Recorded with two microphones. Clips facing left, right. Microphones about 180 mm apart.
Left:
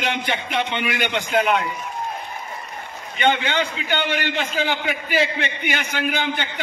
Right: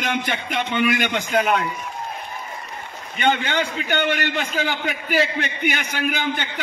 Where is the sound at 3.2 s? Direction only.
40° right (ahead or behind).